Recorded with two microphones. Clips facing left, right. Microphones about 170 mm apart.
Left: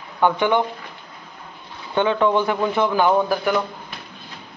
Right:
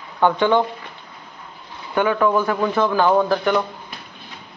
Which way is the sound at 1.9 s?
25° left (ahead or behind).